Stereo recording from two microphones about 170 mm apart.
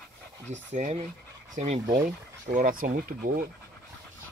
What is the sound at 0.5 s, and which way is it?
Speech, 45° right (ahead or behind).